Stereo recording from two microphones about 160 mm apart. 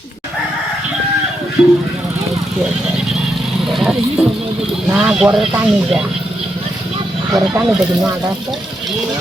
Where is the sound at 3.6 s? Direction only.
Centre (ahead or behind).